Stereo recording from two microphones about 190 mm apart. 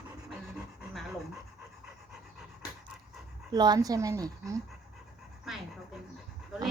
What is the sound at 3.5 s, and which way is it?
Speech, 20° right (ahead or behind).